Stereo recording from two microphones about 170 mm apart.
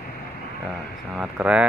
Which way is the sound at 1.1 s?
5° right (ahead or behind).